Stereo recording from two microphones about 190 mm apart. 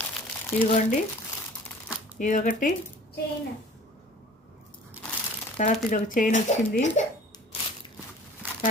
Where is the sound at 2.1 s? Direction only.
45° left (ahead or behind).